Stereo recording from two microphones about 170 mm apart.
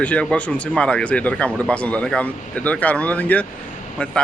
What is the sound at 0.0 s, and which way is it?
A man's voice, 5° left (ahead or behind).